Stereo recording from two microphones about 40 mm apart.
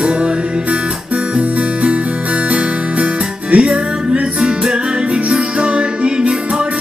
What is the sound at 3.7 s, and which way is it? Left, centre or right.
Music, right.